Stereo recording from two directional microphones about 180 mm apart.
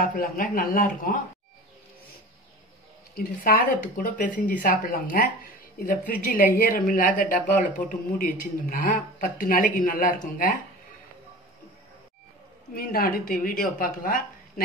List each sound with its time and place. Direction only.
0.0 s speech: 55° left (ahead or behind)
3.2 s speech: 55° left (ahead or behind)
12.7 s a woman's voice: 55° left (ahead or behind)